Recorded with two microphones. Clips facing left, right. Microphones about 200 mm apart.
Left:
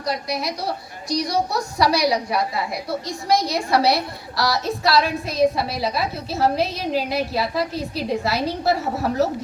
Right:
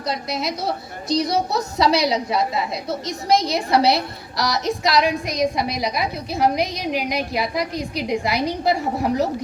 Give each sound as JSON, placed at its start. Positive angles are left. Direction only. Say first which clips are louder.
{"t": 0.1, "sound": "a woman's voice", "louder": "even", "side_deg": -20}